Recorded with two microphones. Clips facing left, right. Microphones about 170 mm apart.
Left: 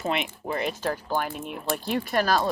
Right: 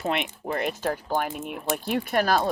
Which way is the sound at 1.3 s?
5° right (ahead or behind).